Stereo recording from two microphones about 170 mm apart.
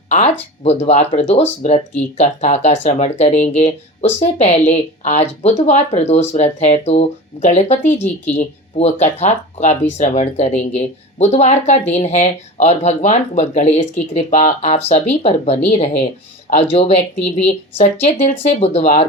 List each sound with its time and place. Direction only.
0.1 s speech: 40° left (ahead or behind)